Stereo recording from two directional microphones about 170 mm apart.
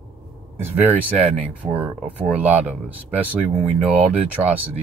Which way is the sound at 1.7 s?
10° right (ahead or behind).